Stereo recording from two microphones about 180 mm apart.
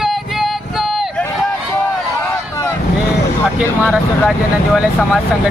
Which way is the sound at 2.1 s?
15° left (ahead or behind).